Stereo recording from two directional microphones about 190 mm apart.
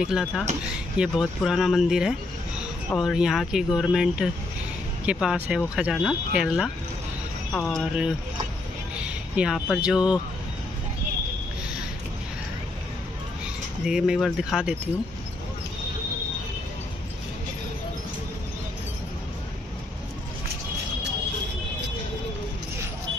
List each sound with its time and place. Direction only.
0.0 s speech: 5° right (ahead or behind)
13.8 s speech: 5° right (ahead or behind)